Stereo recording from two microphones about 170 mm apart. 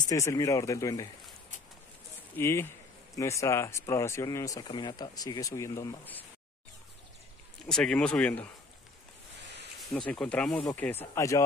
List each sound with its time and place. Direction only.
0.1 s speech: 20° left (ahead or behind)
2.3 s speech: 15° left (ahead or behind)
7.6 s speech: 5° left (ahead or behind)
9.8 s speech: centre (ahead or behind); by 11.4 s 20° left (ahead or behind)